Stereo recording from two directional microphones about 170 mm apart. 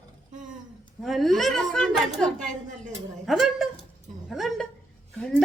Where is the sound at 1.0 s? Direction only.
Centre (ahead or behind).